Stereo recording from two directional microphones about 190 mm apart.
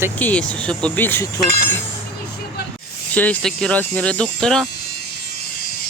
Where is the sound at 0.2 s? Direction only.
5° left (ahead or behind).